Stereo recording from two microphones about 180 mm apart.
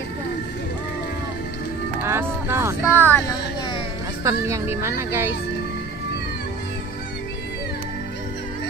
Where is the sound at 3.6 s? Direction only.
25° left (ahead or behind).